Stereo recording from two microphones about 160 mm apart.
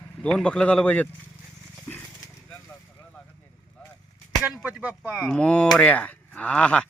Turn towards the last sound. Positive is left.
turn(degrees=5)  # may be behind; listen again after turning